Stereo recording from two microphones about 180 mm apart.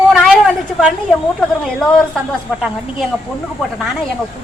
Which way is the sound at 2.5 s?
Centre (ahead or behind).